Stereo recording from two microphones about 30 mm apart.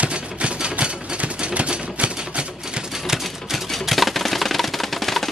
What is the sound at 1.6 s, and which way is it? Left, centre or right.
Typewriter, right.